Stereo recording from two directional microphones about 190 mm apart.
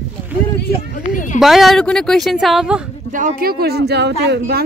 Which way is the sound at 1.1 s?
40° left (ahead or behind).